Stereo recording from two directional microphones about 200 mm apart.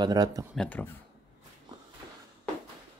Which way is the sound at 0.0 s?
20° right (ahead or behind).